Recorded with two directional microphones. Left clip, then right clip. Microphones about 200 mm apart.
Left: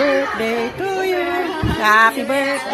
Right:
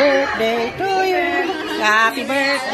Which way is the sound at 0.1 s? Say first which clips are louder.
Right 1 dB; 15° left (ahead or behind).